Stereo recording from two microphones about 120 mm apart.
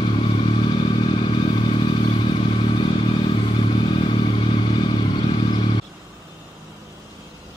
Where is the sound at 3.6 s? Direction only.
45° left (ahead or behind).